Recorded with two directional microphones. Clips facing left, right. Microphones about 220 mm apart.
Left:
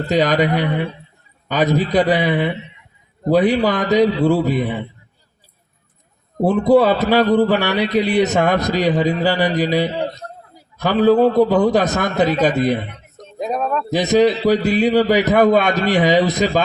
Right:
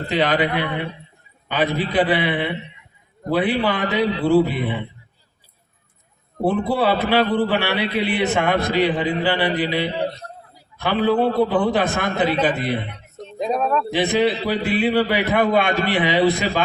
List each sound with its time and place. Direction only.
0.1 s a man's voice: 40° left (ahead or behind)
6.4 s a man's voice: 40° left (ahead or behind)
13.4 s speech: 5° left (ahead or behind)
13.9 s a man's voice: 40° left (ahead or behind)